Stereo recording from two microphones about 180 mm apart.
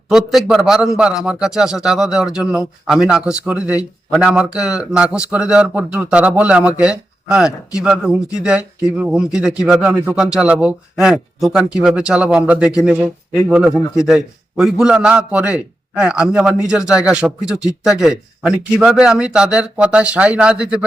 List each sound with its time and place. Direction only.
0.1 s speech: centre (ahead or behind)